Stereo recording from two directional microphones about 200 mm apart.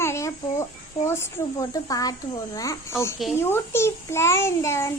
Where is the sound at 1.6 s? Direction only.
20° left (ahead or behind).